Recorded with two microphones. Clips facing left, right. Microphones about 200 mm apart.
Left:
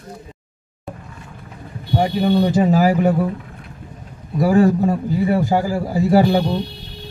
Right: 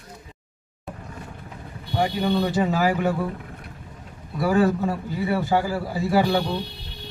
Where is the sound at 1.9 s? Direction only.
40° left (ahead or behind).